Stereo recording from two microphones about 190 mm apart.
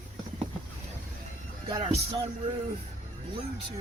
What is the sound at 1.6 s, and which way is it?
Speech, 30° right (ahead or behind).